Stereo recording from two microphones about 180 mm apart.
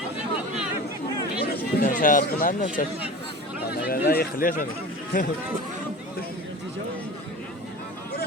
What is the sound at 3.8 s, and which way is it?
Speech, 55° left (ahead or behind).